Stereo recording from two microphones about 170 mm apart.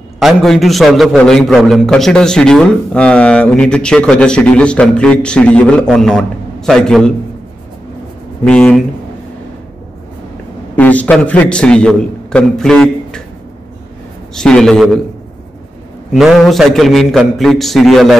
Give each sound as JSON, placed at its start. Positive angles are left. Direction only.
{"t": 0.2, "sound": "a man's voice", "side_deg": 0}
{"t": 8.5, "sound": "a man's voice", "side_deg": 5}
{"t": 10.8, "sound": "a man's voice", "side_deg": 10}
{"t": 14.3, "sound": "a man's voice", "side_deg": 5}
{"t": 16.1, "sound": "a man's voice", "side_deg": 0}